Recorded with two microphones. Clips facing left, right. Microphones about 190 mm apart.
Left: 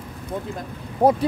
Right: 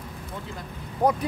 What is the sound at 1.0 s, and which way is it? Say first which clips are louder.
Speech: left 5 dB; 30° left (ahead or behind).